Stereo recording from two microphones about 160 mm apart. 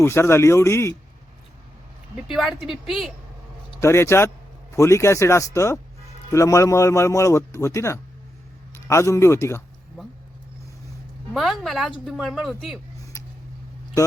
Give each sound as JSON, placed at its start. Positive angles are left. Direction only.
{"t": 0.0, "sound": "speech", "side_deg": 15}
{"t": 2.2, "sound": "a woman's voice", "side_deg": 0}
{"t": 3.8, "sound": "speech", "side_deg": 15}
{"t": 11.3, "sound": "a woman's voice", "side_deg": 0}